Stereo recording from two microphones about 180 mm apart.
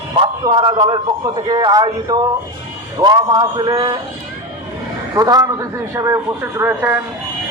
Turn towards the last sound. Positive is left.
turn(degrees=-10)  # may be behind; listen again after turning